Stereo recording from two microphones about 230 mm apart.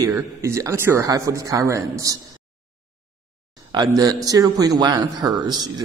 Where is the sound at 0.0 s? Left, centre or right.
Centre.